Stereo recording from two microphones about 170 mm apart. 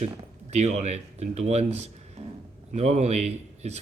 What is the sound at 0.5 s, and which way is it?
Speech, 40° right (ahead or behind).